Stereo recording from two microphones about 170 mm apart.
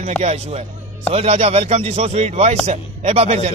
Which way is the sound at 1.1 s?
40° right (ahead or behind).